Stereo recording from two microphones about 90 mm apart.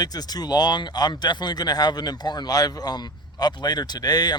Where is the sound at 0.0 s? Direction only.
45° left (ahead or behind).